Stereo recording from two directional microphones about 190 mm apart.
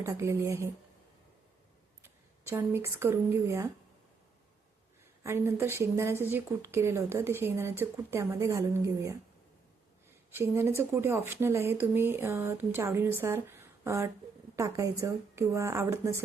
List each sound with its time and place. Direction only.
0.0 s speech: 15° right (ahead or behind)
2.0 s speech: 15° right (ahead or behind)
5.2 s speech: 15° right (ahead or behind)
10.3 s a woman's voice: 15° right (ahead or behind)